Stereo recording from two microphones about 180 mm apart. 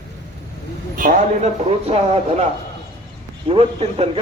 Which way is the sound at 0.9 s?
45° right (ahead or behind).